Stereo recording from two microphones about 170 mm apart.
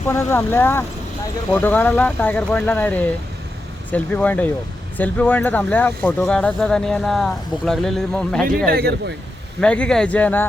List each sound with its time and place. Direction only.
0.1 s speech: 15° left (ahead or behind)
8.4 s speech: 60° right (ahead or behind)
9.6 s speech: 5° left (ahead or behind)